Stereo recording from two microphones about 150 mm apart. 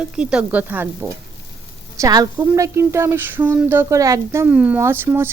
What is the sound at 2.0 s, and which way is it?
A woman's voice, 25° right (ahead or behind).